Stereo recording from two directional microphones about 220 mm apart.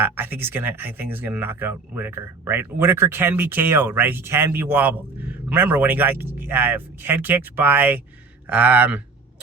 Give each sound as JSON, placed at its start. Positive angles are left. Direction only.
{"t": 0.0, "sound": "speech", "side_deg": -10}